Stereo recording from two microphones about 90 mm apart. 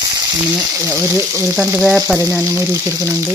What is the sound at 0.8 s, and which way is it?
Speech, 30° right (ahead or behind).